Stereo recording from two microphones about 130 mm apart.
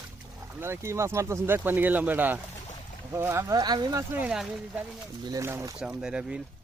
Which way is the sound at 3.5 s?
30° right (ahead or behind).